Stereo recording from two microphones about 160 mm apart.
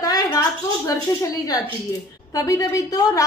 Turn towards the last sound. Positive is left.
turn(degrees=20)  # may be behind; listen again after turning